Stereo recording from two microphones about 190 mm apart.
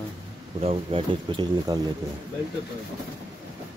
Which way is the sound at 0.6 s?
30° right (ahead or behind).